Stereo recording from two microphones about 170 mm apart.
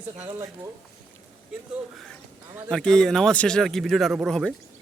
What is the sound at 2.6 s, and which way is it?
Speech, 5° left (ahead or behind).